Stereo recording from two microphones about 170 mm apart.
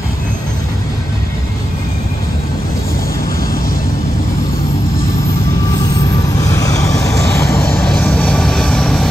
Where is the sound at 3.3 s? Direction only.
60° left (ahead or behind).